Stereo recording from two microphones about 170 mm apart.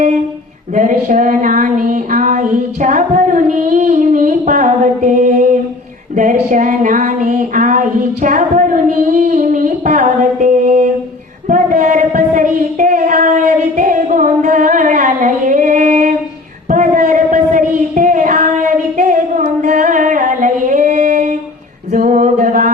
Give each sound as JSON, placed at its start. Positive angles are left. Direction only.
{"t": 0.8, "sound": "a sound", "side_deg": -50}
{"t": 17.7, "sound": "child singing", "side_deg": -50}
{"t": 21.9, "sound": "a capella", "side_deg": -50}